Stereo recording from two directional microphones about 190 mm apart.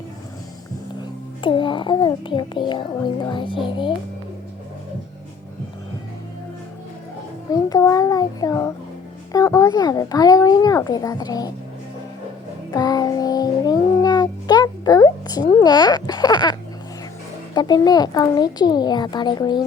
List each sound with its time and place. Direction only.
1.4 s a child's voice: 25° left (ahead or behind)
7.5 s a child's voice: 15° left (ahead or behind)
12.7 s music: 20° left (ahead or behind)
17.5 s a child's voice: 20° left (ahead or behind)